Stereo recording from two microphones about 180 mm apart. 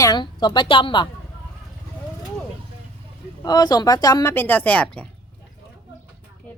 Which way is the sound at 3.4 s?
20° left (ahead or behind).